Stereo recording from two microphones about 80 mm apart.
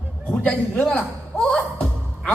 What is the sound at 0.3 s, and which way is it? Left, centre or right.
Speech, centre.